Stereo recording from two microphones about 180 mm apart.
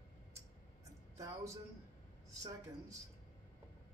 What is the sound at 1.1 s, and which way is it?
Speech, 20° right (ahead or behind).